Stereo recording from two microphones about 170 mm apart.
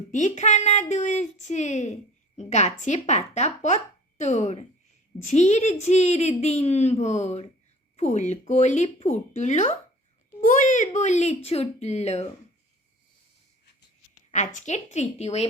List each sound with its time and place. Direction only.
0.1 s a woman's voice: 45° left (ahead or behind)
14.3 s speech: 45° left (ahead or behind)